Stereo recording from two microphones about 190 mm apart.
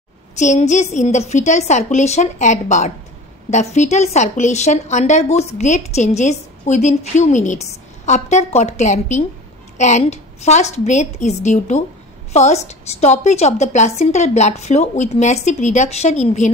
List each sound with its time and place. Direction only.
0.4 s a woman's voice: 40° left (ahead or behind)